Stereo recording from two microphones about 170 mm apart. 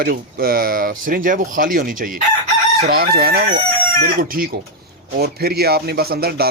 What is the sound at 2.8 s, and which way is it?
A man's voice, 65° right (ahead or behind).